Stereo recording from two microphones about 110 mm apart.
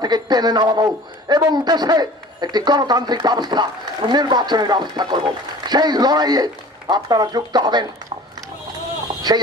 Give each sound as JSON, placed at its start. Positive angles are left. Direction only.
{"t": 0.0, "sound": "a man's voice", "side_deg": -40}
{"t": 9.3, "sound": "a man's voice", "side_deg": -40}